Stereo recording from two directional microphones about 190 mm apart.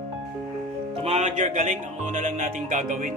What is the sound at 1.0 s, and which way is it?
Speech, 35° right (ahead or behind).